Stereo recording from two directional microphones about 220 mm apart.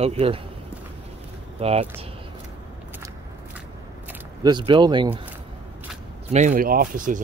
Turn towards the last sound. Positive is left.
turn(degrees=-40)  # may be behind; listen again after turning